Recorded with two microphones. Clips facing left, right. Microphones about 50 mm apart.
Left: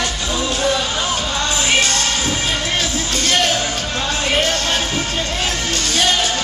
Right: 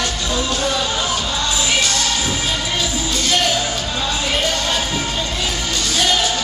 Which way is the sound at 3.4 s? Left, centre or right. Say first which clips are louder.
Even; left.